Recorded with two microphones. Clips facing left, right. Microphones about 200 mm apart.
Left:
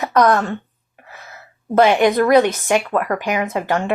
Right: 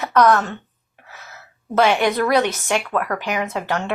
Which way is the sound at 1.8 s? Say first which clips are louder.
Left 4 dB; 50° left (ahead or behind).